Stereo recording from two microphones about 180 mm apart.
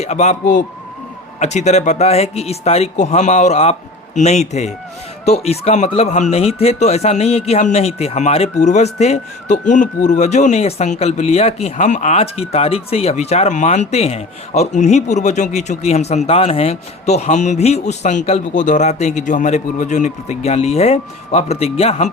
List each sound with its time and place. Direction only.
0.0 s speech: 40° left (ahead or behind)